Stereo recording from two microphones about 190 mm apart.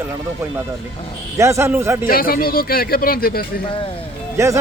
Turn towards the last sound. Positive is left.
turn(degrees=-15)  # may be behind; listen again after turning